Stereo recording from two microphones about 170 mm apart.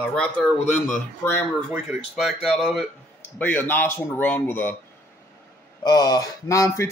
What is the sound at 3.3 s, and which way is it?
Speech, 10° left (ahead or behind).